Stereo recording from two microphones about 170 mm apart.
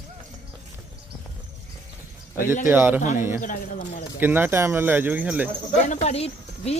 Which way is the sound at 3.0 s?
45° left (ahead or behind).